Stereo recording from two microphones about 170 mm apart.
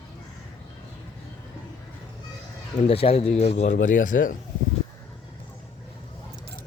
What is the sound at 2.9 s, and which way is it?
A man's voice, 35° left (ahead or behind).